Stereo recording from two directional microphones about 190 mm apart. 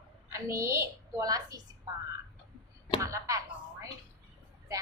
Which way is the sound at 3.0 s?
15° right (ahead or behind).